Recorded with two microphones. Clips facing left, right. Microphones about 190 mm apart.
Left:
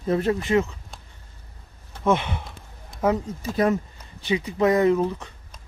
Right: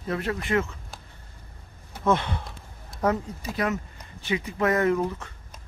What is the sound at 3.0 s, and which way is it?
Speech, 5° left (ahead or behind).